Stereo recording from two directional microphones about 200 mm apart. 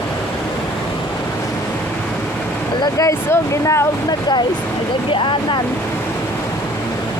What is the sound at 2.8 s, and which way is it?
Speech, 15° left (ahead or behind).